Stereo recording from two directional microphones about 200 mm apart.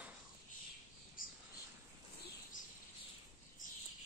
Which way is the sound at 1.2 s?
45° left (ahead or behind).